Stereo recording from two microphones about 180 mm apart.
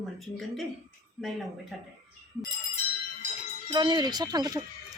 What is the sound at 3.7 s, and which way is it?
Speech, 25° right (ahead or behind).